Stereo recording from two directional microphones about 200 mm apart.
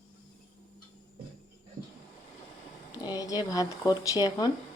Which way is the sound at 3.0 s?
20° left (ahead or behind).